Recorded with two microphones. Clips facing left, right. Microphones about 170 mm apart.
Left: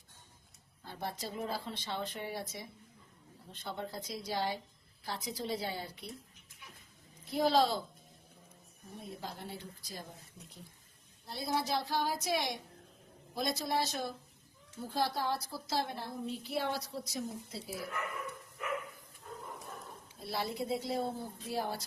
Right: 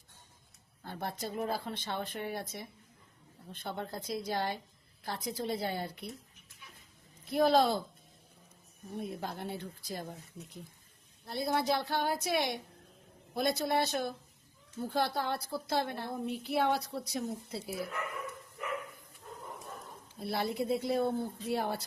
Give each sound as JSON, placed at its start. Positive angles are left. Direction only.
{"t": 0.9, "sound": "a woman's voice", "side_deg": -55}
{"t": 7.3, "sound": "a woman's voice", "side_deg": -55}
{"t": 9.0, "sound": "a woman's voice", "side_deg": -60}
{"t": 11.3, "sound": "a woman's voice", "side_deg": -60}
{"t": 20.2, "sound": "a woman's voice", "side_deg": -60}